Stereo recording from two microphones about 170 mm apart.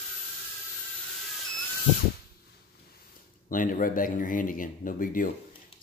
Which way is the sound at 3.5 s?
50° left (ahead or behind).